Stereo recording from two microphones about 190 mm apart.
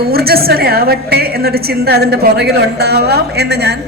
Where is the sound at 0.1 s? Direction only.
55° right (ahead or behind).